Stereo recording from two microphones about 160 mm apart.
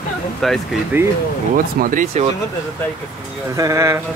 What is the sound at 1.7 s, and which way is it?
Speech, 60° right (ahead or behind).